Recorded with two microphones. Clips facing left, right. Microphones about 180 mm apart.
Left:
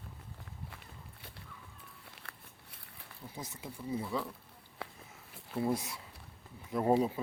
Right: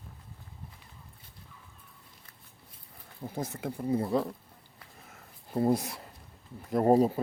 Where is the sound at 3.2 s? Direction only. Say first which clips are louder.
Right 10 dB; 50° right (ahead or behind).